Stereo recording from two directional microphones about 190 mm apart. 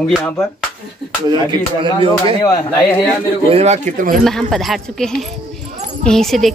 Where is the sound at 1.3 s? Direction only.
25° right (ahead or behind).